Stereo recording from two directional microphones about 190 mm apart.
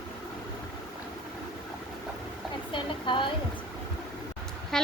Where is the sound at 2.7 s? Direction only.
25° left (ahead or behind).